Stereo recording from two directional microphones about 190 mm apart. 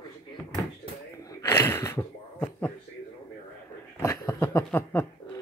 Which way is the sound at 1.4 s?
15° left (ahead or behind).